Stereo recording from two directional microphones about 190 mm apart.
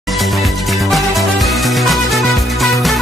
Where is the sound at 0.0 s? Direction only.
Centre (ahead or behind).